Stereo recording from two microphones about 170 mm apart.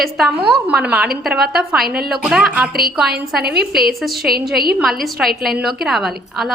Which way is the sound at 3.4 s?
70° right (ahead or behind).